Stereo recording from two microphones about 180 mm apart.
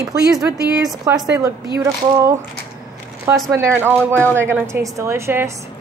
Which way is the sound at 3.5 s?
10° right (ahead or behind).